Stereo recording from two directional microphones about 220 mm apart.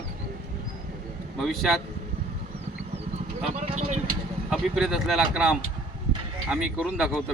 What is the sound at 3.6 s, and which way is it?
Speech, 30° right (ahead or behind).